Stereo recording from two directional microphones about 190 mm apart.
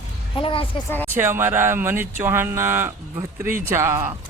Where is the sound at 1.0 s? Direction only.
10° right (ahead or behind).